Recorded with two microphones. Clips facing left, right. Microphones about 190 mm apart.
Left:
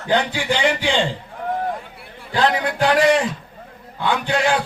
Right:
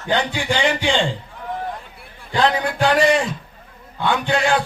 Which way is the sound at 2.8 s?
5° left (ahead or behind).